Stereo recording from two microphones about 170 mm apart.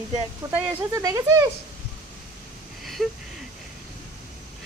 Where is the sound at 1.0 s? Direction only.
20° right (ahead or behind).